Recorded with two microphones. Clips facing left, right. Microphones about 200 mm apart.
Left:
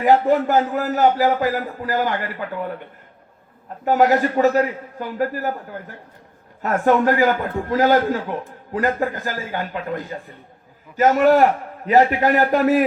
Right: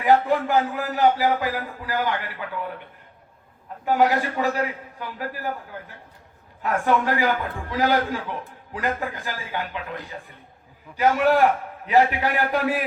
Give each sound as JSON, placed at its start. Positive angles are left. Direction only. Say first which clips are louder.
{"t": 0.0, "sound": "a man's voice", "louder": "left 4 dB", "side_deg": 45}
{"t": 3.8, "sound": "a man's voice", "louder": "left 4 dB", "side_deg": 45}
{"t": 6.6, "sound": "a man's voice", "louder": "left 5 dB", "side_deg": 45}